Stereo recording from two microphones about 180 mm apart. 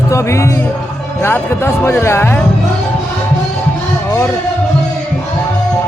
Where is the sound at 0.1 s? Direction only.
15° left (ahead or behind).